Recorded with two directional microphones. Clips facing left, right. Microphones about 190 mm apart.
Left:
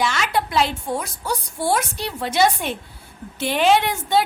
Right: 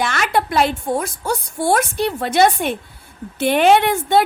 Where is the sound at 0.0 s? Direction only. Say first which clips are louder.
Right 3 dB; 55° right (ahead or behind).